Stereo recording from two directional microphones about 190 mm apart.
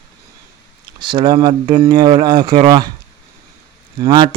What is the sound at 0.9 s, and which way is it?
A man's voice, 25° right (ahead or behind).